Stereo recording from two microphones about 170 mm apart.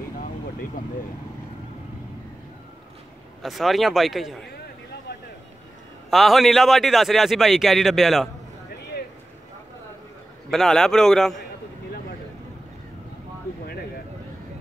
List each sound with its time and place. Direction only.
0.8 s speech: 55° left (ahead or behind)
3.4 s a man's voice: centre (ahead or behind)
6.0 s a man's voice: centre (ahead or behind)
10.5 s a man's voice: centre (ahead or behind)